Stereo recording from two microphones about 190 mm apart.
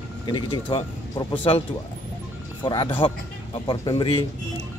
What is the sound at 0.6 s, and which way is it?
Speech, 25° left (ahead or behind).